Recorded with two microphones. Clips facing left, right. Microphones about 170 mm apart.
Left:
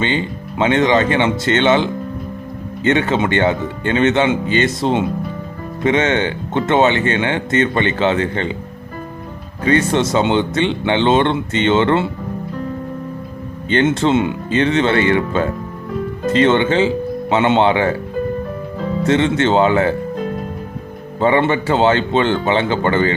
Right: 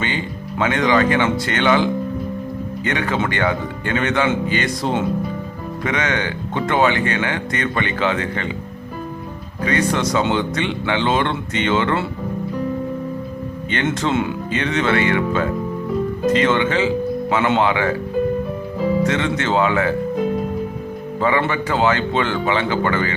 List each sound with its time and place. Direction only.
0.6 s speech: 25° left (ahead or behind)
9.6 s speech: 30° left (ahead or behind)
13.7 s speech: 30° left (ahead or behind)
19.0 s speech: 30° left (ahead or behind)
21.2 s speech: 30° left (ahead or behind)